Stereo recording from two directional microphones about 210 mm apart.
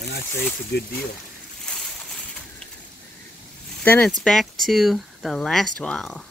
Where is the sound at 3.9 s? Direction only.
5° left (ahead or behind).